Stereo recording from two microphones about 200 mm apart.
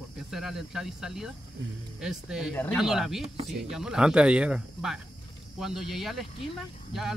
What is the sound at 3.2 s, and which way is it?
Speech, 30° right (ahead or behind).